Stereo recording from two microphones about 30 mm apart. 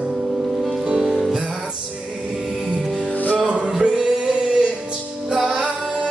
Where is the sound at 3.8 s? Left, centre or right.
Right.